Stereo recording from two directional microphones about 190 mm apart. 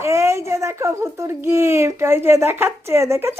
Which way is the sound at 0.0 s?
15° right (ahead or behind).